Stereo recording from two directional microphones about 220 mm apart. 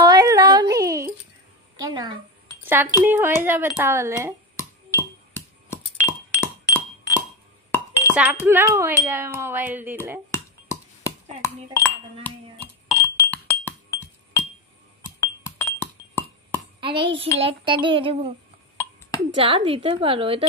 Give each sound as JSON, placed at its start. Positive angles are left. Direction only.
{"t": 0.0, "sound": "a sound", "side_deg": -15}
{"t": 2.6, "sound": "speech", "side_deg": -10}
{"t": 5.3, "sound": "music", "side_deg": 10}
{"t": 8.1, "sound": "speech", "side_deg": -5}
{"t": 10.3, "sound": "a sound", "side_deg": 15}
{"t": 12.2, "sound": "chink", "side_deg": 10}
{"t": 13.7, "sound": "glass", "side_deg": 10}
{"t": 16.8, "sound": "child singing", "side_deg": -25}
{"t": 19.3, "sound": "child singing", "side_deg": -25}